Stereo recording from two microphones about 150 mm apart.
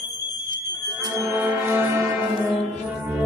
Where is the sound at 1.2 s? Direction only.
15° right (ahead or behind).